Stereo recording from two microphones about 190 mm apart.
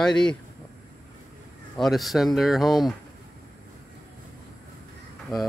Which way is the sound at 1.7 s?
Centre (ahead or behind).